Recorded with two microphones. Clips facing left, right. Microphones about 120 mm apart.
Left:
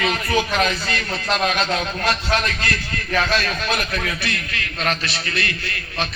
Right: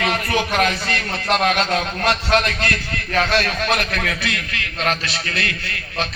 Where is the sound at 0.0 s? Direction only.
60° right (ahead or behind).